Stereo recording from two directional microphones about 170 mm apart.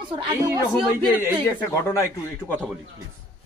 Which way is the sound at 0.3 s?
20° right (ahead or behind).